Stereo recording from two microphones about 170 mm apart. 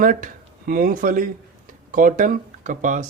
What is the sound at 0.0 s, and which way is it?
Speech, 55° right (ahead or behind).